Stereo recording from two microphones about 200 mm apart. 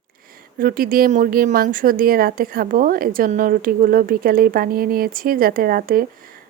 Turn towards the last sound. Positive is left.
turn(degrees=-45)  # may be behind; listen again after turning